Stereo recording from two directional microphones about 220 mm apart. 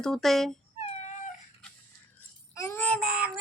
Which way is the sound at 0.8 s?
30° left (ahead or behind).